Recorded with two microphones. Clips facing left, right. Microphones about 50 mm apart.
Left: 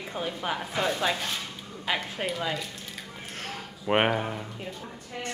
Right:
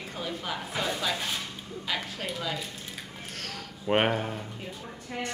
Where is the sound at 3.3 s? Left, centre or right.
Left.